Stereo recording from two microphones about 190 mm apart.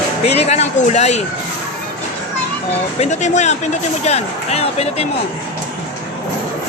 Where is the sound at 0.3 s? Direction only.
35° left (ahead or behind).